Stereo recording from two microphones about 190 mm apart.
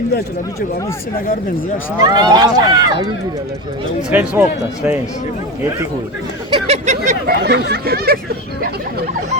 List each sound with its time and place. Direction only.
2.0 s speech: 20° right (ahead or behind)
4.1 s speech: 10° right (ahead or behind)
6.5 s a sound: 35° right (ahead or behind)
7.3 s speech: 55° right (ahead or behind)